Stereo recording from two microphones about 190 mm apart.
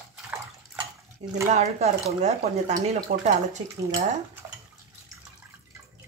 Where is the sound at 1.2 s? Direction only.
35° right (ahead or behind).